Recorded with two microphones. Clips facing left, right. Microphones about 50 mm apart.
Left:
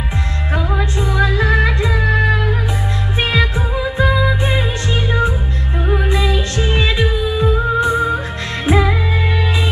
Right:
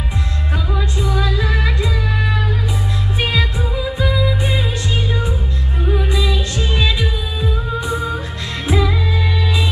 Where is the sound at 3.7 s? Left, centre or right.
Left.